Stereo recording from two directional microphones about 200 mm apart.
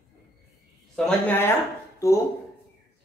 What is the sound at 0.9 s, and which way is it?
A woman's voice, 5° left (ahead or behind).